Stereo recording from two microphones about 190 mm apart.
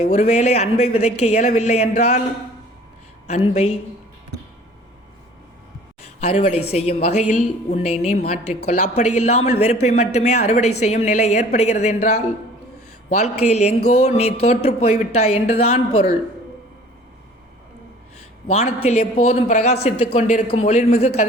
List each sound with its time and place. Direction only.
0.0 s speech: 35° left (ahead or behind)
3.2 s speech: 35° left (ahead or behind)
6.1 s speech: 35° left (ahead or behind)
18.4 s speech: 35° left (ahead or behind)